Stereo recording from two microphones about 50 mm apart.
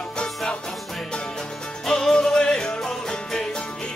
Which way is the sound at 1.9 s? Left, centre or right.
Centre.